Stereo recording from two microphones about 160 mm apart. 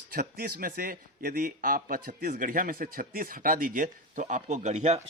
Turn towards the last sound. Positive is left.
turn(degrees=-45)  # may be behind; listen again after turning